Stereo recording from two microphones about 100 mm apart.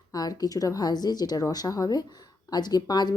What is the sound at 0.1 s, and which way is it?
A woman's voice, 40° left (ahead or behind).